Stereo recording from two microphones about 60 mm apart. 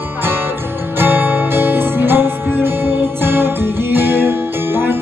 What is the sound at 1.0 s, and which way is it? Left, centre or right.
Music, right.